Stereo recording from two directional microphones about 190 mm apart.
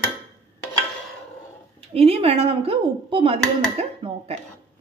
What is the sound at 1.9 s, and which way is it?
Speech, 30° right (ahead or behind).